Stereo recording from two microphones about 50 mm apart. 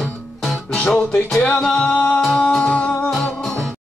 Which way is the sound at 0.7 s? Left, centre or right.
Centre.